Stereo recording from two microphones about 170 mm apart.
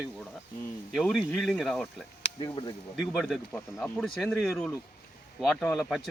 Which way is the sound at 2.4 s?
30° left (ahead or behind).